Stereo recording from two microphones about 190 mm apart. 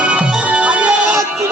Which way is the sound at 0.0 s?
5° right (ahead or behind).